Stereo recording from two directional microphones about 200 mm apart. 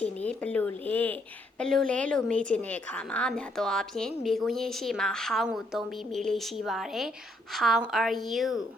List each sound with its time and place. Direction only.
0.0 s a woman's voice: 5° left (ahead or behind)